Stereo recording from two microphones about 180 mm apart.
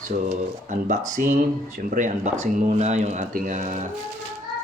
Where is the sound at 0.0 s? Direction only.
40° right (ahead or behind).